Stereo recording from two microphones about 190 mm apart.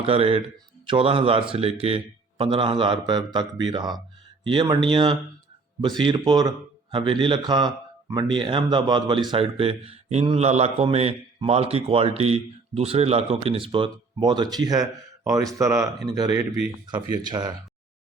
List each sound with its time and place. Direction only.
0.0 s speech: 30° right (ahead or behind)